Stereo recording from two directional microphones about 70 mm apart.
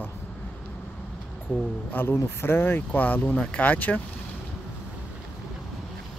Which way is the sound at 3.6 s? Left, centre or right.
Left.